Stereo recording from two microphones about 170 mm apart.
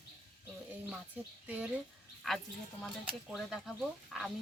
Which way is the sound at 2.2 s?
Centre (ahead or behind).